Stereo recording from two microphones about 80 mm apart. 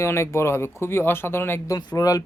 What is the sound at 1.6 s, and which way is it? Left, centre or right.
Speech, left.